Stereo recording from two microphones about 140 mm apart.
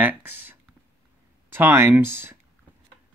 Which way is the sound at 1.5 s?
15° right (ahead or behind).